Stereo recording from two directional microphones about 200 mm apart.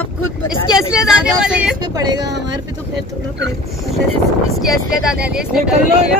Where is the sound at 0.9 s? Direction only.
5° right (ahead or behind).